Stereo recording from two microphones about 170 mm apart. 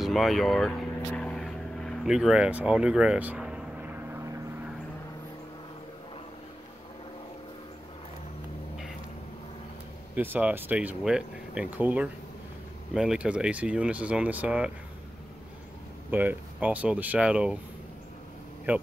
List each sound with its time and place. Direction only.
0.0 s vehicle: centre (ahead or behind)
10.1 s speech: 10° right (ahead or behind)
16.1 s speech: 10° right (ahead or behind)
18.7 s speech: 10° right (ahead or behind)